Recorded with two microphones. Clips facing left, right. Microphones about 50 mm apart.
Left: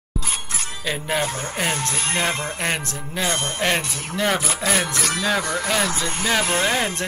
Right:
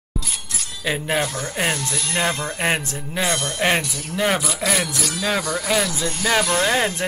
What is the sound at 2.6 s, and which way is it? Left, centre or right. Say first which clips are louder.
Speech: right 3 dB; centre.